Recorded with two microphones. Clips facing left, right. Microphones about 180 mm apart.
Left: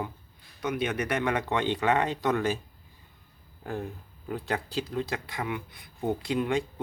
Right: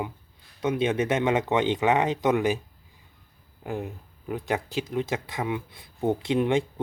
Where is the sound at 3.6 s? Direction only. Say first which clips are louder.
Right 2 dB; 15° right (ahead or behind).